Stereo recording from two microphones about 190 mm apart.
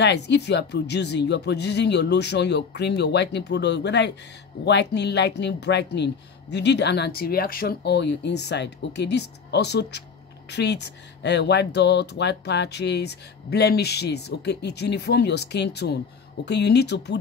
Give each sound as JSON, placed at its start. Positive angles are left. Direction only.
{"t": 0.0, "sound": "speech", "side_deg": 65}